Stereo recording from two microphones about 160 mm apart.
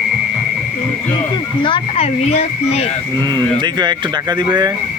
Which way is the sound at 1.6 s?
35° left (ahead or behind).